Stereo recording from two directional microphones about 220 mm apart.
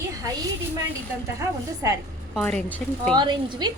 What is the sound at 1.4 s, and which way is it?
Speech, 15° right (ahead or behind).